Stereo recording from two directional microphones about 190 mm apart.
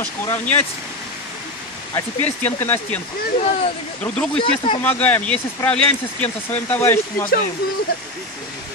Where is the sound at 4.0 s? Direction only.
5° left (ahead or behind).